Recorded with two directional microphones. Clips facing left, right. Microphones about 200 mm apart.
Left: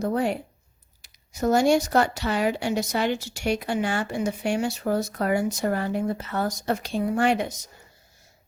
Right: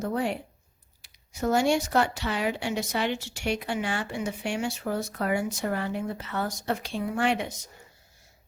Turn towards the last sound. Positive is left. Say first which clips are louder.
# left 4 dB
turn(degrees=45)  # may be behind; listen again after turning